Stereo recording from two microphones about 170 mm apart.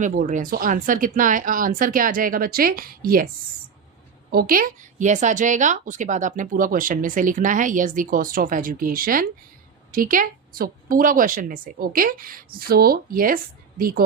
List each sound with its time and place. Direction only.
0.0 s speech: 50° right (ahead or behind)
4.3 s speech: 60° right (ahead or behind)